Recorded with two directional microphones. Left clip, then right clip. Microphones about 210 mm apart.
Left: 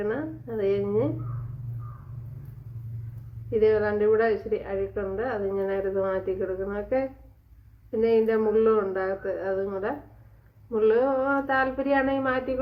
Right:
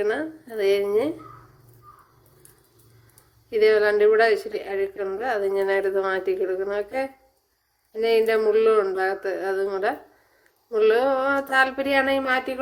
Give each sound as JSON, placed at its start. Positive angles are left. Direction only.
{"t": 0.0, "sound": "a woman's voice", "side_deg": -45}
{"t": 3.5, "sound": "a woman's voice", "side_deg": -45}